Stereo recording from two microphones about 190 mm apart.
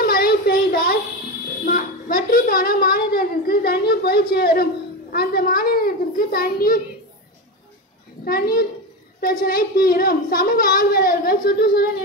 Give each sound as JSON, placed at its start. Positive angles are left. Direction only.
{"t": 0.0, "sound": "child singing", "side_deg": 55}
{"t": 1.6, "sound": "a woman's voice", "side_deg": 45}
{"t": 8.3, "sound": "a woman's voice", "side_deg": 50}